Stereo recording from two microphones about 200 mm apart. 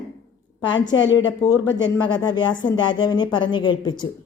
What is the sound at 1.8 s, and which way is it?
Speech, 20° left (ahead or behind).